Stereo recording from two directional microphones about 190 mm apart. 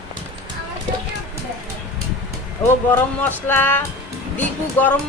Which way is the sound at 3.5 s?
10° left (ahead or behind).